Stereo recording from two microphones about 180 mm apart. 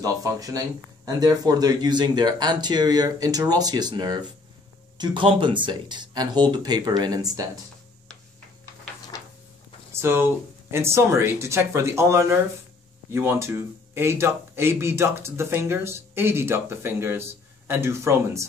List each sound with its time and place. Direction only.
0.0 s speech: 20° right (ahead or behind)
10.0 s a man's voice: 15° right (ahead or behind)